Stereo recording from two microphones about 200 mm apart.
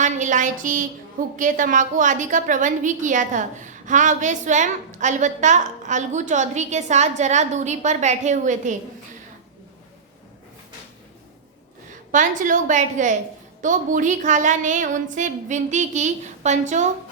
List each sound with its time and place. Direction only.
0.0 s a woman's voice: 40° right (ahead or behind)
12.1 s a woman's voice: 40° right (ahead or behind)